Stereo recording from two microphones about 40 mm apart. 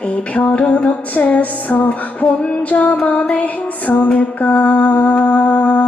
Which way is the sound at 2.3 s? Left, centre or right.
Left.